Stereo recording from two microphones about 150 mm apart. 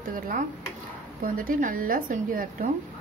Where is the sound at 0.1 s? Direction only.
65° right (ahead or behind).